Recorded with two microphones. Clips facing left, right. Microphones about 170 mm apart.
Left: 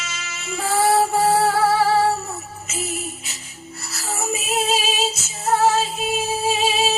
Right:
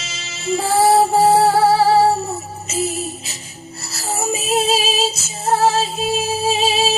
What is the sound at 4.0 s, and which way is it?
Music, 30° right (ahead or behind).